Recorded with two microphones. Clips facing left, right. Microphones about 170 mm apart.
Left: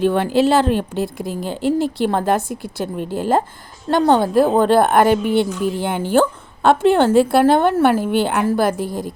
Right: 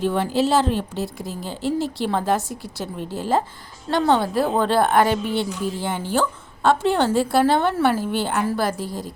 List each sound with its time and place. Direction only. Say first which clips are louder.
0.0 s a woman's voice: left 5 dB; 65° left (ahead or behind)